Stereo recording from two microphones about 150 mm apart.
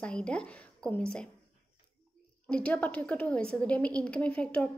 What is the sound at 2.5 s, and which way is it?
A woman's voice, 10° left (ahead or behind).